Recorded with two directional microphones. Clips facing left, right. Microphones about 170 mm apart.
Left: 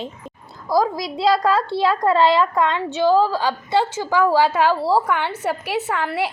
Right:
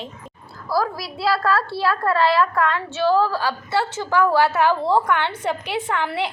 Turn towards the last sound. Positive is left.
turn(degrees=5)  # may be behind; listen again after turning